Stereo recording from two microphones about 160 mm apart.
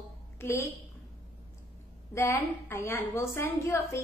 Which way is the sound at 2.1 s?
15° left (ahead or behind).